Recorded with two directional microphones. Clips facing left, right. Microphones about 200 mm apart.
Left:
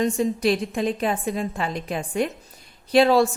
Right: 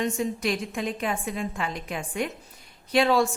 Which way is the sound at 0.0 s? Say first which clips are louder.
Left 5 dB; 35° left (ahead or behind).